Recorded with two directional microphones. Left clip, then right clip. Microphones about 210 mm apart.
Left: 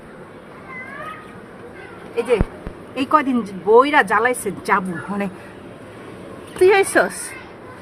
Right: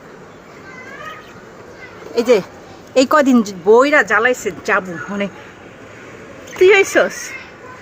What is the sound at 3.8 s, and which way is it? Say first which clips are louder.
Speech: right 3 dB; 20° right (ahead or behind).